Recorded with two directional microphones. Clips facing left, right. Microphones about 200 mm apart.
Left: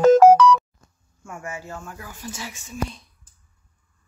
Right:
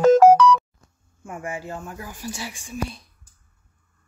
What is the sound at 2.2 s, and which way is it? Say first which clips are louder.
Speech: right 1 dB; 10° right (ahead or behind).